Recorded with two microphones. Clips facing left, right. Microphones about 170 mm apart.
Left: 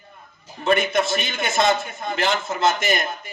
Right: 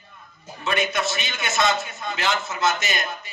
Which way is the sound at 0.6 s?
55° left (ahead or behind).